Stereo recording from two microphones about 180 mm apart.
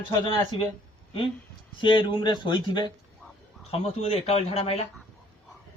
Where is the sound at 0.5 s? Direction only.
30° left (ahead or behind).